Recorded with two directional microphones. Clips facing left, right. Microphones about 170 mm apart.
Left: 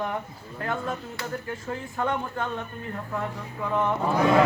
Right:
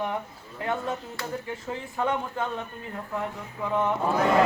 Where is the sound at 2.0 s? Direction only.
5° right (ahead or behind).